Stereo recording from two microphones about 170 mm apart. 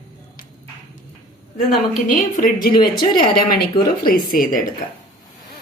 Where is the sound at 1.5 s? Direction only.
50° left (ahead or behind).